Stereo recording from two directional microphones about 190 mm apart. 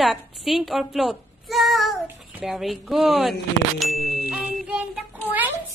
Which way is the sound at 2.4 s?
Centre (ahead or behind).